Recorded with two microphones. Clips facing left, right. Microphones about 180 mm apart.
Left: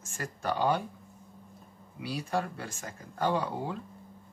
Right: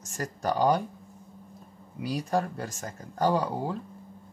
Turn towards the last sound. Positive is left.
turn(degrees=-40)  # may be behind; listen again after turning